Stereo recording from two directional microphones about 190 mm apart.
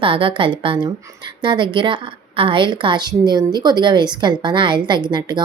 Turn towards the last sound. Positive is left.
turn(degrees=-25)  # may be behind; listen again after turning